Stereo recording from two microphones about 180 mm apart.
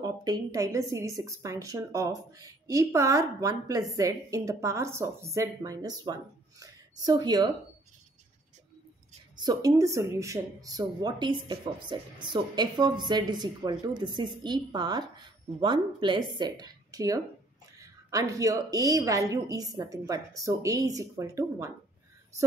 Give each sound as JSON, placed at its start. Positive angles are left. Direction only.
{"t": 0.0, "sound": "a woman's voice", "side_deg": -20}
{"t": 9.4, "sound": "a woman's voice", "side_deg": -20}